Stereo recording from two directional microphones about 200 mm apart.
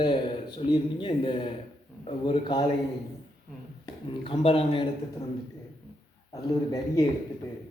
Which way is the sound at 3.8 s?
25° left (ahead or behind).